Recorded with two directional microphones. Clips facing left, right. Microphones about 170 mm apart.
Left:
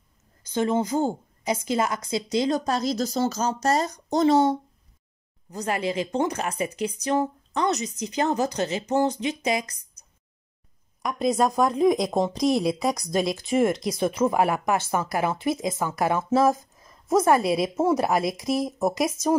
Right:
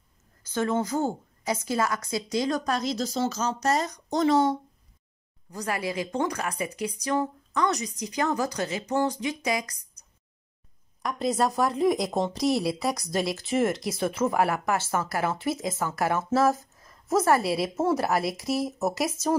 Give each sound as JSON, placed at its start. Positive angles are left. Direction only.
{"t": 0.5, "sound": "speech", "side_deg": 20}
{"t": 11.0, "sound": "speech", "side_deg": 15}